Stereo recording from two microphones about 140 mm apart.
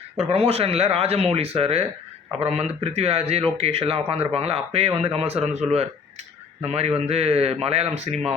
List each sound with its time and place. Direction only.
0.2 s speech: 50° right (ahead or behind)